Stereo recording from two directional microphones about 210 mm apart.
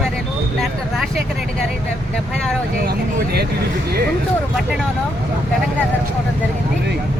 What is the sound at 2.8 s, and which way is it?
Speech, 50° right (ahead or behind).